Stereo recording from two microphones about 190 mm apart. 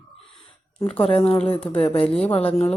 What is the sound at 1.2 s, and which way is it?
Speech, 5° left (ahead or behind).